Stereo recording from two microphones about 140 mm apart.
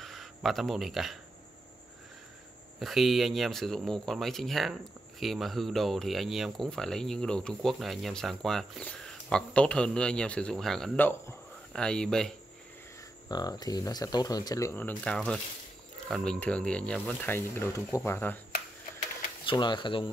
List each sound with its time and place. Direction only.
0.0 s a sound: centre (ahead or behind)
2.8 s speech: centre (ahead or behind)
11.0 s speech: 15° left (ahead or behind)
13.3 s speech: 30° left (ahead or behind); by 17.3 s 5° left (ahead or behind)
17.3 s speech: 15° left (ahead or behind)
19.5 s speech: 35° left (ahead or behind)